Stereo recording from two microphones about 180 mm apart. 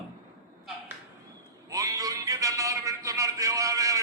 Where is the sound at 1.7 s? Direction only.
20° right (ahead or behind).